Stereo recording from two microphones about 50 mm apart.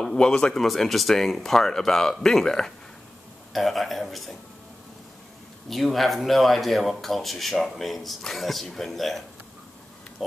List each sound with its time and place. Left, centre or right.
0.0 s speech: centre
0.7 s speech: centre
5.7 s speech: centre